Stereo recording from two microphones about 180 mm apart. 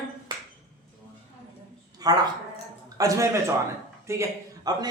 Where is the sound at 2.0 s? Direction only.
20° right (ahead or behind).